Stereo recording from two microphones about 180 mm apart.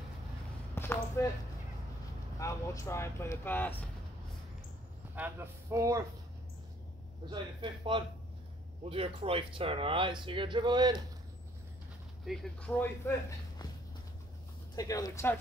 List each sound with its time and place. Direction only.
0.7 s speech: 15° left (ahead or behind)
2.3 s speech: 15° left (ahead or behind)
5.1 s speech: 10° right (ahead or behind)
7.2 s speech: 25° right (ahead or behind)
12.3 s speech: 5° left (ahead or behind)
14.8 s speech: 20° left (ahead or behind)